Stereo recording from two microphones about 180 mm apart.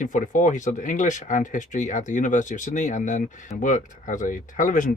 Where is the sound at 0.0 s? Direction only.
45° left (ahead or behind).